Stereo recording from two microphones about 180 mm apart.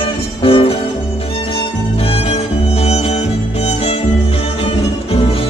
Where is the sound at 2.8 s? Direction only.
35° left (ahead or behind).